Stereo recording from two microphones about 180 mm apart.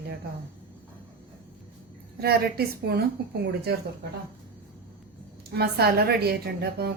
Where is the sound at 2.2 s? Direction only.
60° right (ahead or behind).